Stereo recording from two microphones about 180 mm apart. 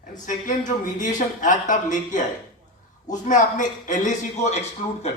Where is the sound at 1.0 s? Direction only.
45° left (ahead or behind).